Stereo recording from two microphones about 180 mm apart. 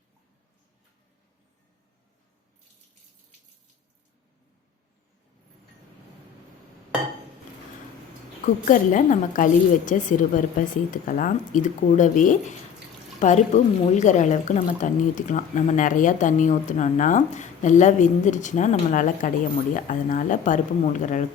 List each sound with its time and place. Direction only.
8.6 s speech: 45° left (ahead or behind)